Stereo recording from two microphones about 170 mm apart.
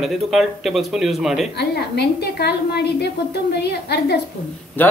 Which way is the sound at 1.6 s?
70° left (ahead or behind).